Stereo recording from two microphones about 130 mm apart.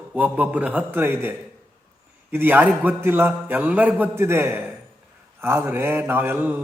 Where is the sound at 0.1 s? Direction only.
10° right (ahead or behind).